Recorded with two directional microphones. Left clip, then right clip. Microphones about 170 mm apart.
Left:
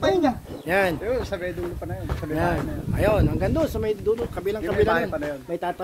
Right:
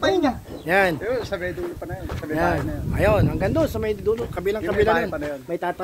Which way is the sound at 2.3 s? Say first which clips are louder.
Right 3 dB; 40° right (ahead or behind).